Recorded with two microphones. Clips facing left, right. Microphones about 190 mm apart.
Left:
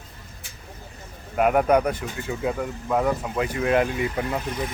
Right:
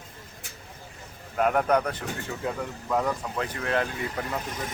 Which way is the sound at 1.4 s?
10° left (ahead or behind).